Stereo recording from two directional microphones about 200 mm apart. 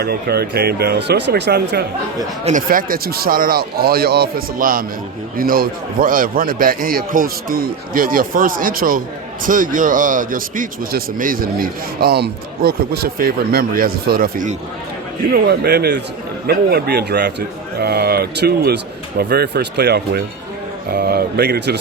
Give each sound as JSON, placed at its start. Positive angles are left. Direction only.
{"t": 0.0, "sound": "a man's voice", "side_deg": -50}
{"t": 2.4, "sound": "a man's voice", "side_deg": -40}